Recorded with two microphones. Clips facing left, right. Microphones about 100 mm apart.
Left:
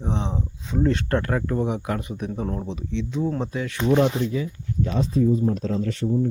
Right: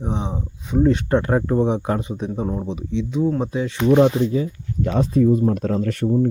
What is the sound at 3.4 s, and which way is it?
Speech, 20° right (ahead or behind).